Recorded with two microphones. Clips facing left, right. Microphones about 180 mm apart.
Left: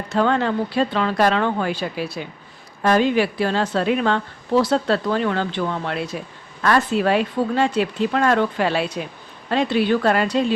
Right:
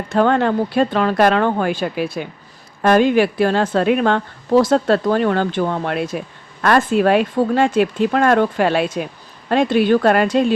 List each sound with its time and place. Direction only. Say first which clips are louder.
0.1 s a woman's voice: right 4 dB; 50° right (ahead or behind)